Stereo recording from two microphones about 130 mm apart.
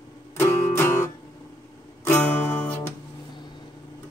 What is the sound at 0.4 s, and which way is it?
Music, 20° left (ahead or behind).